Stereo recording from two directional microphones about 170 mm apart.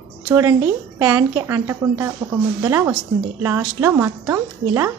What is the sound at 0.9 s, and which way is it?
A woman's voice, 20° right (ahead or behind).